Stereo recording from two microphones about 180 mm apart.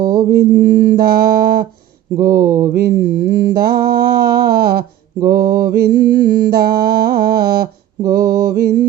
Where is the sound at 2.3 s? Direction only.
15° right (ahead or behind).